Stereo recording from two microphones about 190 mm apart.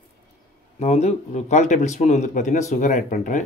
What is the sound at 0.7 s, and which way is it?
Speech, 35° left (ahead or behind).